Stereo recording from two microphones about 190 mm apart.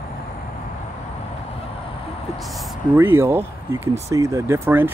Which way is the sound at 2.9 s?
15° right (ahead or behind).